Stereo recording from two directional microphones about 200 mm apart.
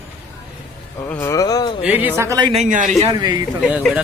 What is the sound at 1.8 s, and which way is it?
Speech, 10° right (ahead or behind).